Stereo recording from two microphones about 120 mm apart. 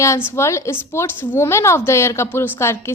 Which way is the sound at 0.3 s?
25° left (ahead or behind).